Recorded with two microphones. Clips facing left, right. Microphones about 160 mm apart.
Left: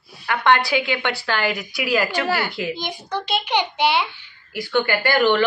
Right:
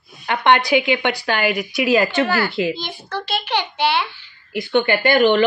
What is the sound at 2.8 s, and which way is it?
A child's voice, 15° left (ahead or behind).